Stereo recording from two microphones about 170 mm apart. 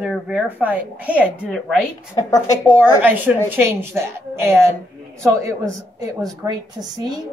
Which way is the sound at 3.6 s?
15° right (ahead or behind).